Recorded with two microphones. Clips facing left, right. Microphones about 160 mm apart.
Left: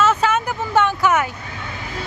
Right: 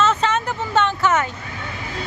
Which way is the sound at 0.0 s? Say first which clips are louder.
Left 1 dB; 10° left (ahead or behind).